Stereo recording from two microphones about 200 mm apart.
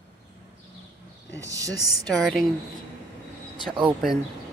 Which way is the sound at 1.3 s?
15° right (ahead or behind).